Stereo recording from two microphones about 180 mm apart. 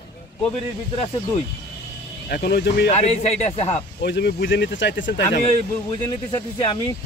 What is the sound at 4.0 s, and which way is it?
Speech, 65° left (ahead or behind).